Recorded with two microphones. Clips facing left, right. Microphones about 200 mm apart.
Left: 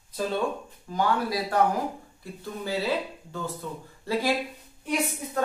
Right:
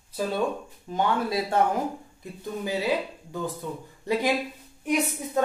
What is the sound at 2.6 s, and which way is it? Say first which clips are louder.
Speech: right 1 dB; 15° right (ahead or behind).